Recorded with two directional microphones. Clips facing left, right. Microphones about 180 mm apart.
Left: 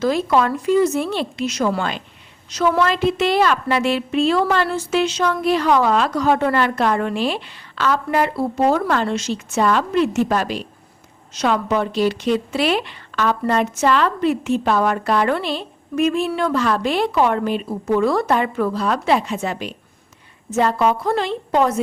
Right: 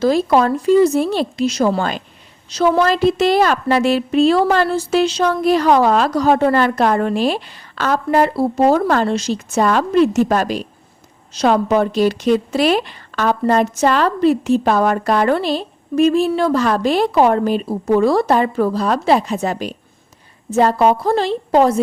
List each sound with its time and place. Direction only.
0.0 s a woman's voice: 35° right (ahead or behind)